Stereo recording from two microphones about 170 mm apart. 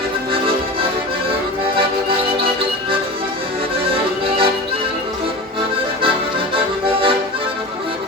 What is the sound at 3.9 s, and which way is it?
Accordion, 30° right (ahead or behind).